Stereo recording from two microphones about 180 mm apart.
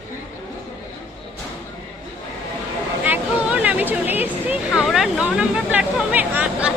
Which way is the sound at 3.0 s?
10° right (ahead or behind).